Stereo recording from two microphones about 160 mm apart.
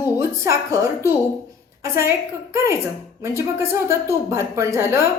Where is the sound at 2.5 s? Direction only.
15° right (ahead or behind).